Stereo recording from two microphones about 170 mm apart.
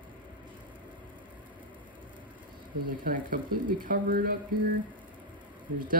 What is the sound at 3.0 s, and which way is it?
Speech, 55° right (ahead or behind).